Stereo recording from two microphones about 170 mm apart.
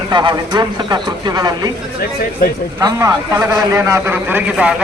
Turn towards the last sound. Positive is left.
turn(degrees=-5)  # may be behind; listen again after turning